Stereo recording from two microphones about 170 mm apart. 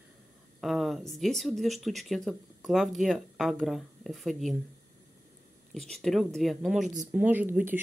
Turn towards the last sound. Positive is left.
turn(degrees=-10)  # may be behind; listen again after turning